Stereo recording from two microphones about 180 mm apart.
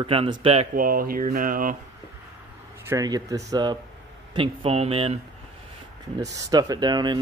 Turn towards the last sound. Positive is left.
turn(degrees=-25)  # may be behind; listen again after turning